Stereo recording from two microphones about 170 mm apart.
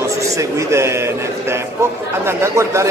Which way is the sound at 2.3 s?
15° right (ahead or behind).